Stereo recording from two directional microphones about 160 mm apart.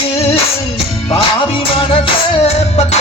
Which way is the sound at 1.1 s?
35° left (ahead or behind).